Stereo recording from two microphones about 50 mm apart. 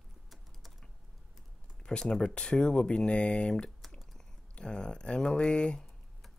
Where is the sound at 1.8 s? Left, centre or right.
Centre.